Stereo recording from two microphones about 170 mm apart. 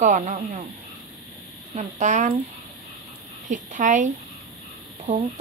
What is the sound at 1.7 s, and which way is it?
Speech, 45° right (ahead or behind).